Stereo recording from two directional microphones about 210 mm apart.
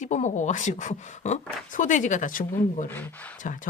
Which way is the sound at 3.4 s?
40° left (ahead or behind).